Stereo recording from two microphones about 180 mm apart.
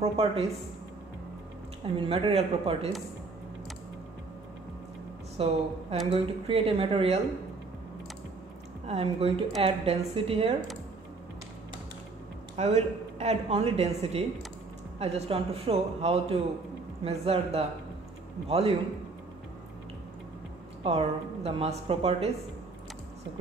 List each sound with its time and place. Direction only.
0.0 s speech: 35° right (ahead or behind)
2.0 s speech: 35° right (ahead or behind)
5.4 s speech: 30° right (ahead or behind)
8.8 s speech: 35° right (ahead or behind)
12.5 s speech: 40° right (ahead or behind)
20.8 s speech: 35° right (ahead or behind)